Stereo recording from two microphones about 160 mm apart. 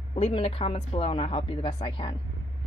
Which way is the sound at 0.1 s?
35° left (ahead or behind).